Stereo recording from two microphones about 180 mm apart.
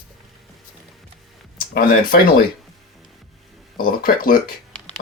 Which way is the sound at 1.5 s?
55° left (ahead or behind).